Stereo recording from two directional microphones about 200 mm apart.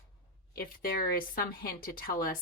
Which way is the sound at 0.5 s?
50° left (ahead or behind).